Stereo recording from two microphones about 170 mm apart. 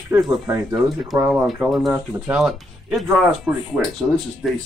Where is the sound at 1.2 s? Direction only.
5° right (ahead or behind).